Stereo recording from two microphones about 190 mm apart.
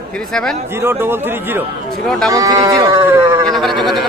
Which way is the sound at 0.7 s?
10° right (ahead or behind).